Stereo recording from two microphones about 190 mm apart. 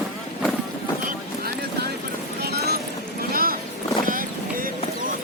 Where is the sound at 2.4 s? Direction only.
55° right (ahead or behind).